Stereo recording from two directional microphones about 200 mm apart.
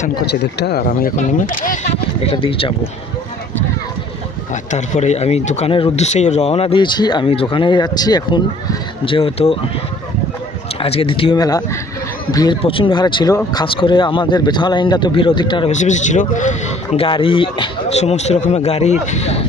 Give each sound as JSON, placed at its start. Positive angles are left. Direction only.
{"t": 0.3, "sound": "speech", "side_deg": 55}
{"t": 4.7, "sound": "speech", "side_deg": 35}
{"t": 10.8, "sound": "speech", "side_deg": 30}
{"t": 15.7, "sound": "speech", "side_deg": 35}